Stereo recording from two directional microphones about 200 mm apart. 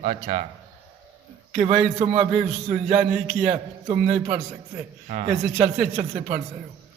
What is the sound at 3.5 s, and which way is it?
A man's voice, 30° right (ahead or behind).